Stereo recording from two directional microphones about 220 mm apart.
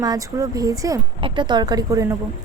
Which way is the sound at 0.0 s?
15° right (ahead or behind).